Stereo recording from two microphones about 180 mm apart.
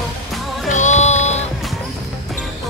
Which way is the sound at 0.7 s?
40° left (ahead or behind).